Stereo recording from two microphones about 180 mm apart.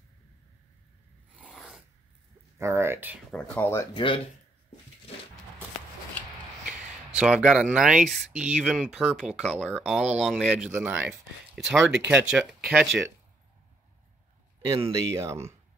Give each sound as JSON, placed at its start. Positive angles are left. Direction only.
{"t": 1.5, "sound": "filing", "side_deg": 0}
{"t": 2.6, "sound": "speech", "side_deg": -15}
{"t": 3.3, "sound": "speech", "side_deg": 5}
{"t": 3.5, "sound": "speech", "side_deg": 15}
{"t": 3.9, "sound": "speech", "side_deg": 30}
{"t": 7.2, "sound": "speech", "side_deg": -5}
{"t": 14.7, "sound": "speech", "side_deg": -20}